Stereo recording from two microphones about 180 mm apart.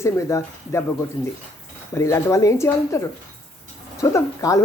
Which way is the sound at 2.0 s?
15° left (ahead or behind).